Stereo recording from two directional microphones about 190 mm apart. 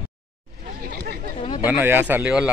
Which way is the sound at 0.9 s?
55° right (ahead or behind).